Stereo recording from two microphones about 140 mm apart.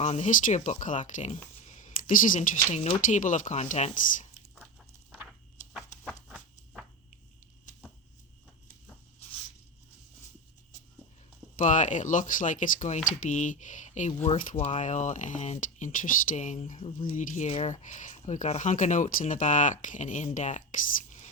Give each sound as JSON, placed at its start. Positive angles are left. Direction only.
{"t": 0.0, "sound": "speech", "side_deg": 55}
{"t": 6.2, "sound": "a sound", "side_deg": 0}
{"t": 11.5, "sound": "speech", "side_deg": 65}